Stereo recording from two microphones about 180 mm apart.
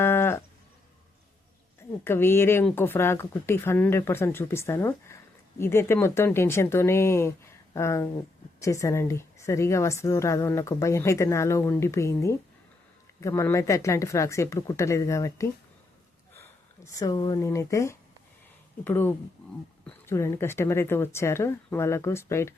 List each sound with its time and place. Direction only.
0.0 s livestock: 15° left (ahead or behind)
2.0 s a woman's voice: 10° left (ahead or behind)